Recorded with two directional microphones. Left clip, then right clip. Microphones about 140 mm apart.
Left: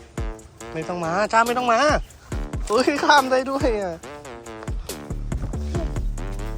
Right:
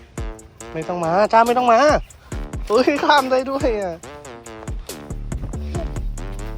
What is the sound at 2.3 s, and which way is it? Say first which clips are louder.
Music: right 3 dB; centre (ahead or behind).